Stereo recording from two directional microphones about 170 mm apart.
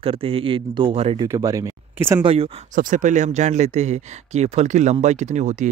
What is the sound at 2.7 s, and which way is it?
Speech, 50° right (ahead or behind).